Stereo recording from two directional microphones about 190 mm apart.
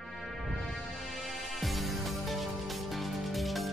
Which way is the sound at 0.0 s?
Centre (ahead or behind).